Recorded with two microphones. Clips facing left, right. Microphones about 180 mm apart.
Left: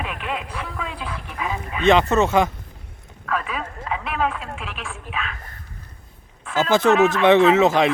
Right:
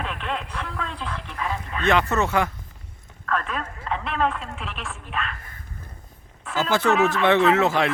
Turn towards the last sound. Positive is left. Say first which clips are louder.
# left 4 dB
turn(degrees=20)  # may be behind; listen again after turning